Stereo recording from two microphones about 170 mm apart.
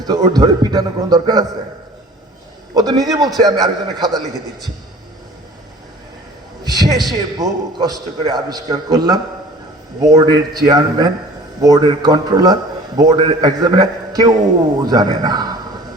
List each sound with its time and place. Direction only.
0.0 s a man's voice: 25° right (ahead or behind)
2.7 s a man's voice: 25° right (ahead or behind)
6.7 s a sound: 25° right (ahead or behind)
7.1 s a man's voice: 25° right (ahead or behind)